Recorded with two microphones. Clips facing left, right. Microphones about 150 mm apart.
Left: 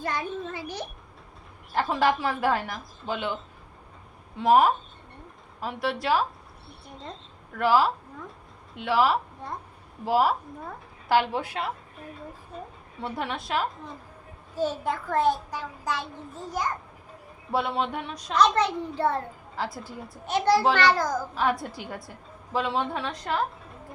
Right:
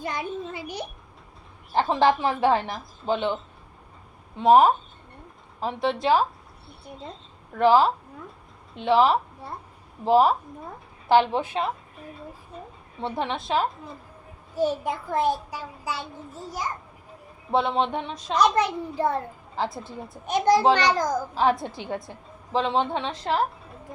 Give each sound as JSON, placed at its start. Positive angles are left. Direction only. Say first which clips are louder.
{"t": 0.0, "sound": "a child's voice", "louder": "even", "side_deg": -15}
{"t": 1.7, "sound": "a woman's voice", "louder": "right 3 dB", "side_deg": -25}
{"t": 4.4, "sound": "a woman's voice", "louder": "right 3 dB", "side_deg": -20}
{"t": 7.6, "sound": "a woman's voice", "louder": "right 4 dB", "side_deg": -25}
{"t": 9.4, "sound": "a child's voice", "louder": "left 1 dB", "side_deg": -10}
{"t": 10.1, "sound": "a woman's voice", "louder": "right 4 dB", "side_deg": -20}
{"t": 13.0, "sound": "a woman's voice", "louder": "right 3 dB", "side_deg": -25}
{"t": 14.5, "sound": "a child's voice", "louder": "right 2 dB", "side_deg": -10}
{"t": 17.5, "sound": "a woman's voice", "louder": "right 4 dB", "side_deg": -25}
{"t": 18.3, "sound": "a child's voice", "louder": "right 1 dB", "side_deg": -10}
{"t": 19.5, "sound": "a woman's voice", "louder": "right 4 dB", "side_deg": -25}